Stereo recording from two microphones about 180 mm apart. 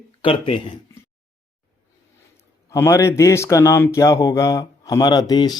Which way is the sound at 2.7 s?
15° left (ahead or behind).